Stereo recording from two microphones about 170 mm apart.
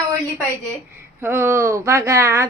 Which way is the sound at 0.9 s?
15° right (ahead or behind).